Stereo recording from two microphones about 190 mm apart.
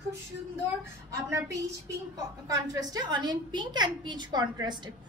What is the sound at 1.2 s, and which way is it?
A woman's voice, 15° right (ahead or behind).